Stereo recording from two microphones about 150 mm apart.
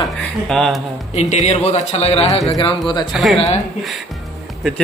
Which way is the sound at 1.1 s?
50° left (ahead or behind).